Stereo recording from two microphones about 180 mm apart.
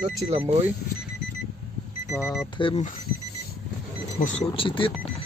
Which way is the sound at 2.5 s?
30° left (ahead or behind).